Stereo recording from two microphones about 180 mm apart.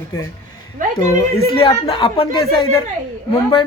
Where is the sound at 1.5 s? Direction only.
30° left (ahead or behind).